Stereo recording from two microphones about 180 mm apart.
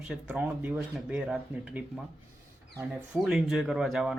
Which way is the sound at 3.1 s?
5° right (ahead or behind).